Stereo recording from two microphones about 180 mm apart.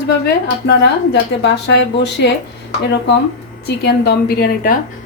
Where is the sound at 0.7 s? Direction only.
70° left (ahead or behind).